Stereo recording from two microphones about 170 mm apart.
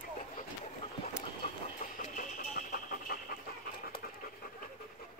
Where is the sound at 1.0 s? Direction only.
40° left (ahead or behind); by 3.3 s 55° left (ahead or behind).